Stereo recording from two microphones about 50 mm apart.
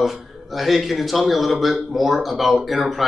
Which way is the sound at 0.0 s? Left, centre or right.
Centre.